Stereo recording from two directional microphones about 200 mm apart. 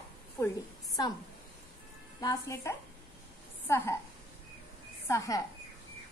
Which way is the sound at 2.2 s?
15° left (ahead or behind).